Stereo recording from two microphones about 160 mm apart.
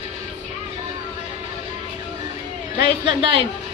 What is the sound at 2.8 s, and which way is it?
Speech, 30° right (ahead or behind).